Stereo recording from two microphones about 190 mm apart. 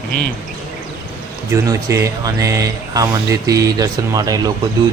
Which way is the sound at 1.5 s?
15° right (ahead or behind).